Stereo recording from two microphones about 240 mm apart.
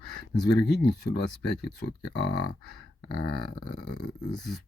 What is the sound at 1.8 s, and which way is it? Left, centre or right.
Speech, left.